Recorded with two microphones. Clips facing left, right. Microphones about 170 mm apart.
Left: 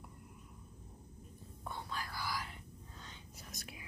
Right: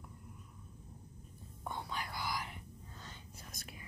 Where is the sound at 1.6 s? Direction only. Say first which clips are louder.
Right 2 dB; 15° right (ahead or behind).